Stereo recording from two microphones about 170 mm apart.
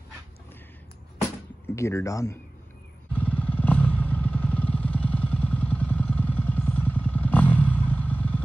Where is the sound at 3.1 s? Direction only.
10° left (ahead or behind).